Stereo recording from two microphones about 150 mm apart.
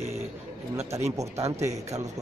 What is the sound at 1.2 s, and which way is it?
Speech, 20° right (ahead or behind).